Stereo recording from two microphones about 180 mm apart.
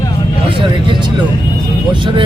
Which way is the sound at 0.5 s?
25° right (ahead or behind).